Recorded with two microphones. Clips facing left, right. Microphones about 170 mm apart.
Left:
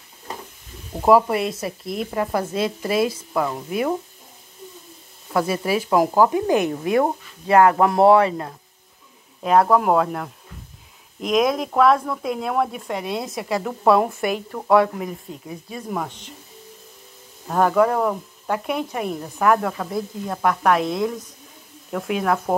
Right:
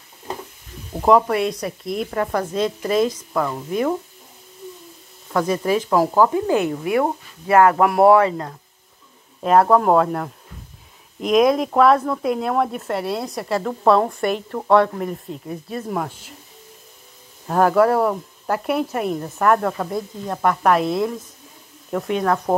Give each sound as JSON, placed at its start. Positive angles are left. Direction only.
{"t": 1.0, "sound": "speech", "side_deg": 5}
{"t": 5.7, "sound": "speech", "side_deg": 10}
{"t": 9.4, "sound": "speech", "side_deg": 0}
{"t": 17.5, "sound": "speech", "side_deg": -5}